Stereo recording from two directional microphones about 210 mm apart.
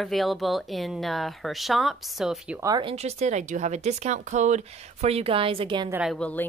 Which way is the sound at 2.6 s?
20° right (ahead or behind).